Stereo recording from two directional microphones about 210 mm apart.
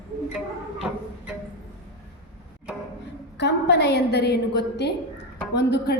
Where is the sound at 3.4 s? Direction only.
55° left (ahead or behind).